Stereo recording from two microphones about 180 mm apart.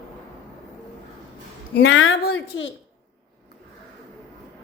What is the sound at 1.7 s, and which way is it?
Speech, 80° left.